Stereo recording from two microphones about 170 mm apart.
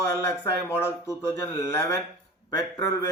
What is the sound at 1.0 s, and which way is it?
A man's voice, 15° left (ahead or behind).